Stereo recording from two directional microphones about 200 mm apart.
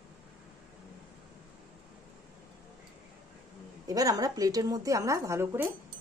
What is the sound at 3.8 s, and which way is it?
A woman's voice, 20° right (ahead or behind).